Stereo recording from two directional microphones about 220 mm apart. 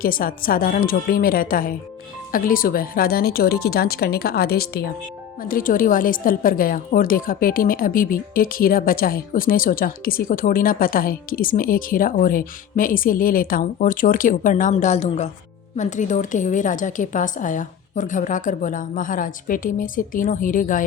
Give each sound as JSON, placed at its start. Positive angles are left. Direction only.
{"t": 0.0, "sound": "a woman's voice", "side_deg": 40}